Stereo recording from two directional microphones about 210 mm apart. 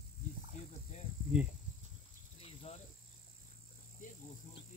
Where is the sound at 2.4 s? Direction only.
30° left (ahead or behind).